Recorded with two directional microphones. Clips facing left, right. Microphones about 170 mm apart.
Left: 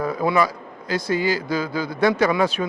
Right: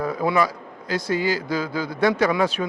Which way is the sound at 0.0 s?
20° left (ahead or behind).